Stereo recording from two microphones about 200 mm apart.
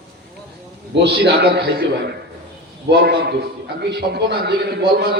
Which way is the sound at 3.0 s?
50° right (ahead or behind).